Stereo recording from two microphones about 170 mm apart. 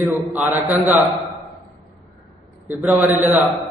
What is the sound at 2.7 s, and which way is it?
Speech, 10° right (ahead or behind).